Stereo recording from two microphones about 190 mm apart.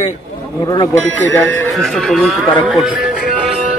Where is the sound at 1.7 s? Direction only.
Centre (ahead or behind).